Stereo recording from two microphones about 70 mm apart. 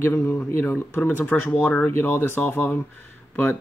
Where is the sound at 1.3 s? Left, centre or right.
Centre.